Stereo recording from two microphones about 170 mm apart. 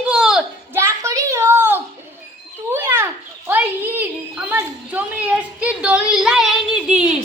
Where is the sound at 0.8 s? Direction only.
15° right (ahead or behind).